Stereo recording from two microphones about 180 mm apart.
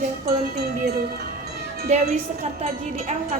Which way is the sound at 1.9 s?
35° right (ahead or behind).